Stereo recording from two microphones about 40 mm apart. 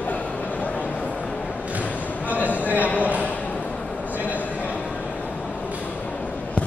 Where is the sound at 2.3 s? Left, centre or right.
Right.